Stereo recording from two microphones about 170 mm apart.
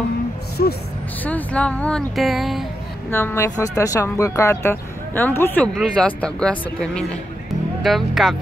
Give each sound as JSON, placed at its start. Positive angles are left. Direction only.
{"t": 0.6, "sound": "speech", "side_deg": 55}
{"t": 1.2, "sound": "speech", "side_deg": 10}
{"t": 3.1, "sound": "speech", "side_deg": 15}